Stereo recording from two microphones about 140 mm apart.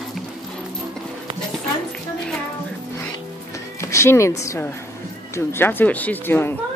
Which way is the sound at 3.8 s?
20° left (ahead or behind).